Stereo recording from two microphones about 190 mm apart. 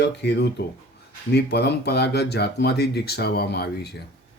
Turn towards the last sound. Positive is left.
turn(degrees=60)  # may be behind; listen again after turning